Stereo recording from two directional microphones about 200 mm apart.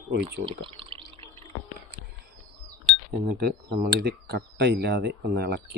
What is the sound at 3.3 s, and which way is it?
Speech, 50° right (ahead or behind).